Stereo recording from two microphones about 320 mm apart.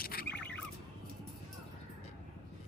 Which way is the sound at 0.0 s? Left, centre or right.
Left.